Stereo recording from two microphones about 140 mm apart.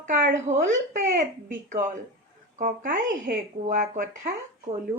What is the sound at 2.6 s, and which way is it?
Speech, 90° right.